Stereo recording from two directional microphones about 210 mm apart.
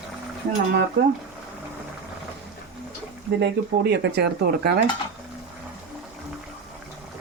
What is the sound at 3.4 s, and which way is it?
Speech, 50° right (ahead or behind).